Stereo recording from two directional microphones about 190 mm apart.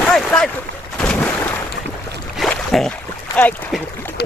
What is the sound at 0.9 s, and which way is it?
Boat, 5° left (ahead or behind).